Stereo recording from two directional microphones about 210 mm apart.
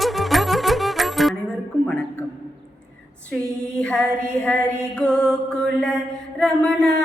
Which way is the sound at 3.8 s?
5° left (ahead or behind).